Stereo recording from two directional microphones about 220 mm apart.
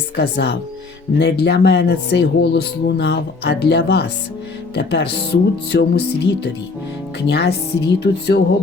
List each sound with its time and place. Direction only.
0.2 s speech: 50° left (ahead or behind)
7.3 s speech: 50° left (ahead or behind)